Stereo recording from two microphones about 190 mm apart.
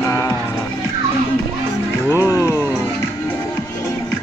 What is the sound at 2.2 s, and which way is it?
Speech, 15° left (ahead or behind).